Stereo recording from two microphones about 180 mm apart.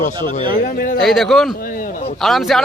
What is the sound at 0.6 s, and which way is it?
Speech, 50° left (ahead or behind).